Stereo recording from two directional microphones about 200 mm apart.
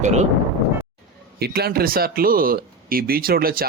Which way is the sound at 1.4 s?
50° right (ahead or behind).